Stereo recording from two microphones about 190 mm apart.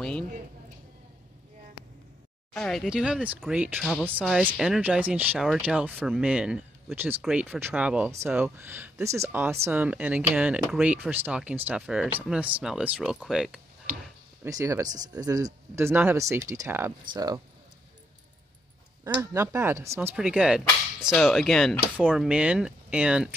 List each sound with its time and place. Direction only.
2.5 s speech: centre (ahead or behind)
14.4 s speech: 15° right (ahead or behind)
19.3 s speech: 15° right (ahead or behind)